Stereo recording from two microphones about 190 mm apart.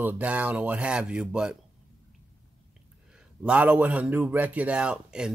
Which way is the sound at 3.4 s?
10° right (ahead or behind).